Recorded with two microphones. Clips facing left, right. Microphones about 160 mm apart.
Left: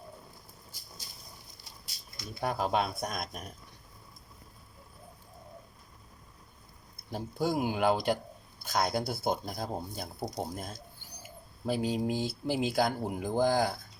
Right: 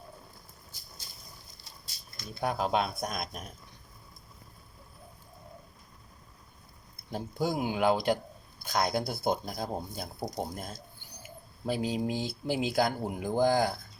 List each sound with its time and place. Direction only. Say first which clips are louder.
2.4 s speech: right 1 dB; centre (ahead or behind)
7.1 s speech: even; 5° left (ahead or behind)